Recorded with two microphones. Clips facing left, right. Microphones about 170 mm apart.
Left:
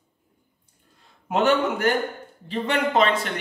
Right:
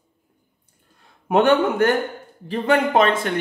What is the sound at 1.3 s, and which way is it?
Speech, 55° right (ahead or behind).